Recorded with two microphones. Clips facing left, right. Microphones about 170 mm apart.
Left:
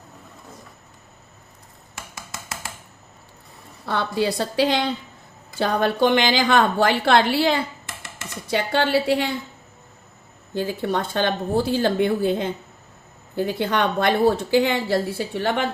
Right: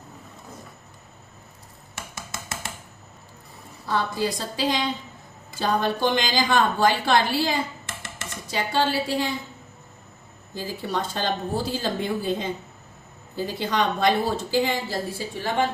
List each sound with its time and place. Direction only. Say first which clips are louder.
3.8 s a woman's voice: left 2 dB; 70° left (ahead or behind)
10.5 s a woman's voice: left 5 dB; 65° left (ahead or behind)